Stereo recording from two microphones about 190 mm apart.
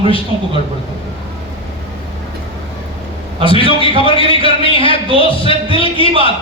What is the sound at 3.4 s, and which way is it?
A man's voice, 30° left (ahead or behind).